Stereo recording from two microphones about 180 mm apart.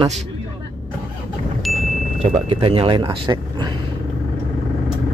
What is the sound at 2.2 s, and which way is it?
Speech, 30° right (ahead or behind).